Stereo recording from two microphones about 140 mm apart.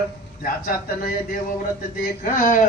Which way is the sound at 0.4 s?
90° left.